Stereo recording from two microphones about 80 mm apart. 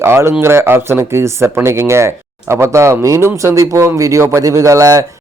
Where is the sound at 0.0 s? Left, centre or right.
Right.